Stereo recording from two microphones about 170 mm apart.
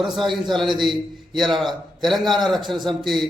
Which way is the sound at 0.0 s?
Centre (ahead or behind).